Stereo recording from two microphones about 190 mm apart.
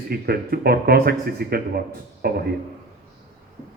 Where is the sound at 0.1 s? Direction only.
55° right (ahead or behind).